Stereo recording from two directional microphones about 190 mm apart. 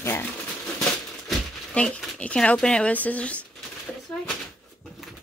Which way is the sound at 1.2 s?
5° left (ahead or behind).